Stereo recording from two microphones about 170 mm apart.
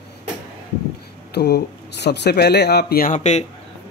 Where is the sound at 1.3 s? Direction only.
75° left (ahead or behind); by 3.4 s 45° left (ahead or behind).